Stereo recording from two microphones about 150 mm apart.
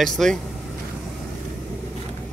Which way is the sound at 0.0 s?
5° left (ahead or behind).